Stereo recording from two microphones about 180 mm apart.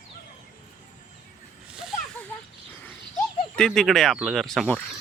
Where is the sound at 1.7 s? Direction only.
5° right (ahead or behind).